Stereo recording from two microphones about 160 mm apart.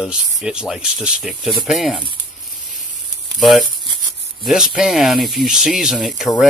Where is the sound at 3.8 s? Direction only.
30° right (ahead or behind).